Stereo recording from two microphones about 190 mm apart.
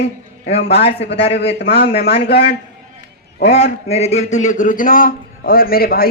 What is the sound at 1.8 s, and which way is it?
Speech, 55° left (ahead or behind).